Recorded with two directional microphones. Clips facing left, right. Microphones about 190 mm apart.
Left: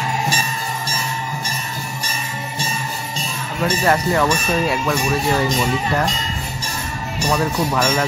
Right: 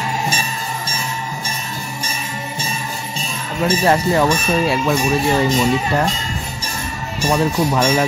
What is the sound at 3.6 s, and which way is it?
Speech, 25° right (ahead or behind).